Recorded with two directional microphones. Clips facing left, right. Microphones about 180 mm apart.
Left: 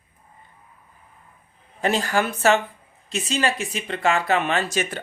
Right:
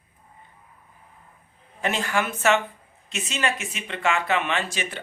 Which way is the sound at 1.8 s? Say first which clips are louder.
Left 4 dB; 35° left (ahead or behind).